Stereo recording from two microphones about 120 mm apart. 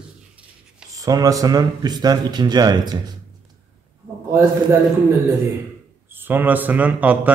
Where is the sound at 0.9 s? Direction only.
30° right (ahead or behind).